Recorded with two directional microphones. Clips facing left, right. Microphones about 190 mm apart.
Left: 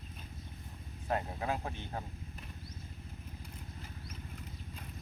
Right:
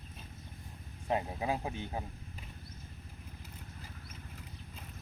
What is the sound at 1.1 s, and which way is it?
Speech, 15° right (ahead or behind).